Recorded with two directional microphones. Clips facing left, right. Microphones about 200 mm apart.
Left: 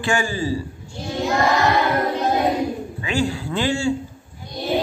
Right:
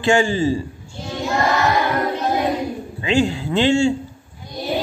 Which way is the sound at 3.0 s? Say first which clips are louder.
Right 5 dB; 20° right (ahead or behind).